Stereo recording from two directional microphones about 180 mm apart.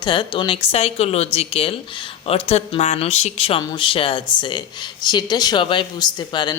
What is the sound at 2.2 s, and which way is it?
Speech, 35° left (ahead or behind).